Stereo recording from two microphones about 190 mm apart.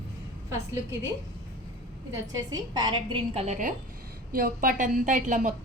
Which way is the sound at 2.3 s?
20° right (ahead or behind).